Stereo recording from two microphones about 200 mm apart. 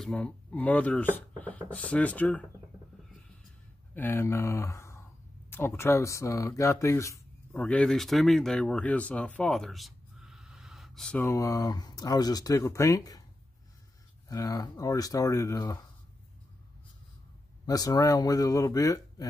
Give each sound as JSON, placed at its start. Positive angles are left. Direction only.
{"t": 0.0, "sound": "speech", "side_deg": 5}
{"t": 3.9, "sound": "speech", "side_deg": 10}
{"t": 11.2, "sound": "speech", "side_deg": 15}
{"t": 14.3, "sound": "speech", "side_deg": 15}
{"t": 17.6, "sound": "speech", "side_deg": 15}